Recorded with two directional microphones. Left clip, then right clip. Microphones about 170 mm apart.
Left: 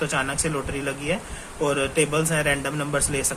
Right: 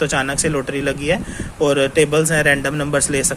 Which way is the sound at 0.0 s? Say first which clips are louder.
Right 6 dB; 40° right (ahead or behind).